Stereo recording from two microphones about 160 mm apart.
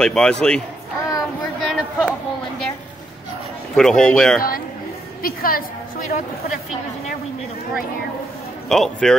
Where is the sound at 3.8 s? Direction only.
5° left (ahead or behind).